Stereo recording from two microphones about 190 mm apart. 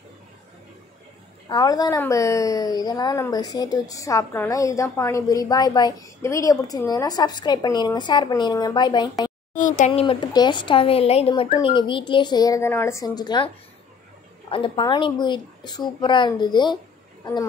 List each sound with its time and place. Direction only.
1.5 s a woman's voice: 20° left (ahead or behind)
9.5 s a woman's voice: 40° left (ahead or behind); by 13.5 s 20° left (ahead or behind)
14.5 s a woman's voice: 25° left (ahead or behind)